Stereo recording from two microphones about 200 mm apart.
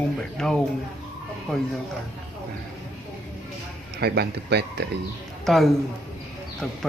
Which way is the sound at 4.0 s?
55° right (ahead or behind).